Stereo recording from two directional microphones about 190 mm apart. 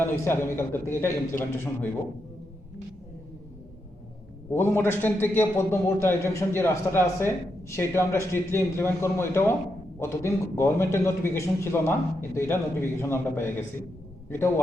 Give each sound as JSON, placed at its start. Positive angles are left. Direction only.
{"t": 0.0, "sound": "a man's voice", "side_deg": 10}
{"t": 4.5, "sound": "a man's voice", "side_deg": 15}